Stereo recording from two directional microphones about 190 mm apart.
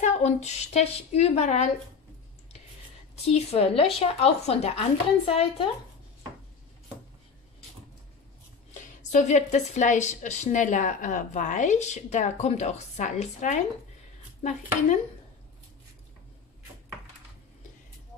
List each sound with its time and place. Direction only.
0.0 s speech: 35° left (ahead or behind)
3.3 s speech: 35° left (ahead or behind)
8.7 s speech: 40° left (ahead or behind)